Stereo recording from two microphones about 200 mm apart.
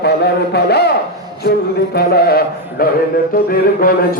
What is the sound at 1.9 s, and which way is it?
Speech, 50° left (ahead or behind).